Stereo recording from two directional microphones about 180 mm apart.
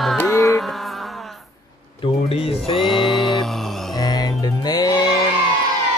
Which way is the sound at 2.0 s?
30° left (ahead or behind).